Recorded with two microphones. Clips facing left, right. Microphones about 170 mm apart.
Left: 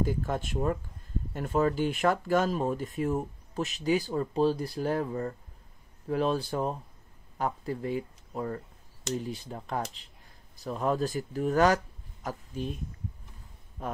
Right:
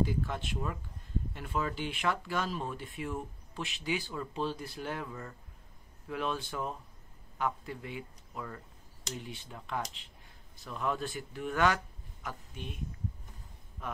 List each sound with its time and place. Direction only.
0.0 s speech: 45° left (ahead or behind)